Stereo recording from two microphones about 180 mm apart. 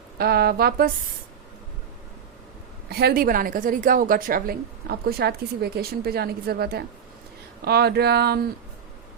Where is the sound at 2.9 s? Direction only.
60° right (ahead or behind).